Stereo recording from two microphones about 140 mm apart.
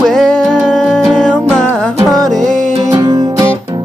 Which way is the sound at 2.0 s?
25° right (ahead or behind).